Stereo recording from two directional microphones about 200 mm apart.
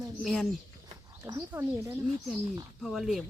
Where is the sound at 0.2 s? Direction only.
Centre (ahead or behind).